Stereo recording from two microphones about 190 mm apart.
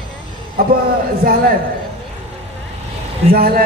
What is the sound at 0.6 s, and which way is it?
Speech, 50° right (ahead or behind).